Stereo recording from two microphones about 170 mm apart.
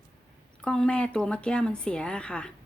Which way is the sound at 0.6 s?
5° left (ahead or behind).